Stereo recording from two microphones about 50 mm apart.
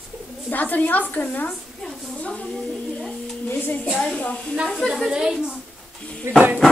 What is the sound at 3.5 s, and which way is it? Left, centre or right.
Music, left.